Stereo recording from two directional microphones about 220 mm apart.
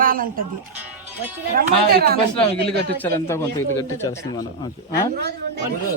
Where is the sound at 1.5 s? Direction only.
40° right (ahead or behind).